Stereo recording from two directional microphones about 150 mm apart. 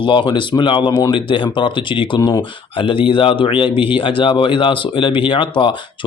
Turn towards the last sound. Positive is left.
turn(degrees=35)  # may be behind; listen again after turning